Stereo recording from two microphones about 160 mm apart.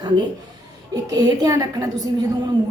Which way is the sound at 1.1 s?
25° right (ahead or behind).